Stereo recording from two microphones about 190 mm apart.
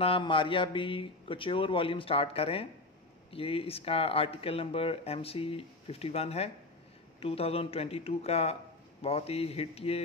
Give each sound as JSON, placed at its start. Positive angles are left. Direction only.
{"t": 0.0, "sound": "a man's voice", "side_deg": 30}